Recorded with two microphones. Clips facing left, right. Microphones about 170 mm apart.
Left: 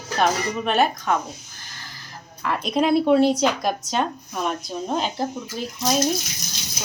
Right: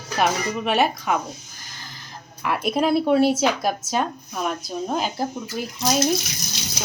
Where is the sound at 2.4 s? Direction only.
10° right (ahead or behind).